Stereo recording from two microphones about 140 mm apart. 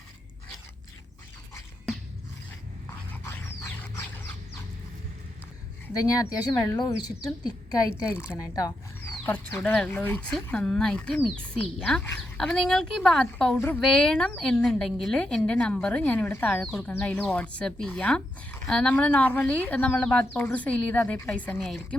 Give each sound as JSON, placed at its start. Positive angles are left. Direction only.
{"t": 3.2, "sound": "dog", "side_deg": 15}
{"t": 5.9, "sound": "speech", "side_deg": 25}
{"t": 8.2, "sound": "speech", "side_deg": 20}
{"t": 9.2, "sound": "a woman's voice", "side_deg": 15}
{"t": 13.6, "sound": "a woman's voice", "side_deg": 15}
{"t": 13.8, "sound": "a woman's voice", "side_deg": 5}